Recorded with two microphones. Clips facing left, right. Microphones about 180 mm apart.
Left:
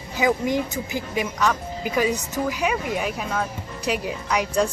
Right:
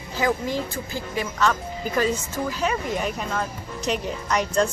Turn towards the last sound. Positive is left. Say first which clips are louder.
# even
turn(degrees=10)  # may be behind; listen again after turning